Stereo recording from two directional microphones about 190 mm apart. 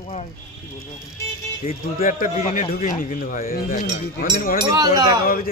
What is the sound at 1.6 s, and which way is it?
A man's voice, 45° left (ahead or behind).